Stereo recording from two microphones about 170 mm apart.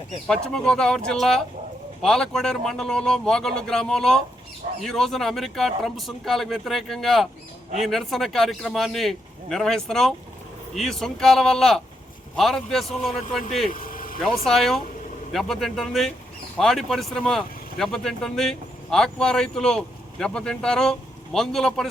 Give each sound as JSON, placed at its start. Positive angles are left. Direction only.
{"t": 0.3, "sound": "speech", "side_deg": 5}
{"t": 13.7, "sound": "vehicle", "side_deg": 55}
{"t": 14.4, "sound": "speech", "side_deg": 0}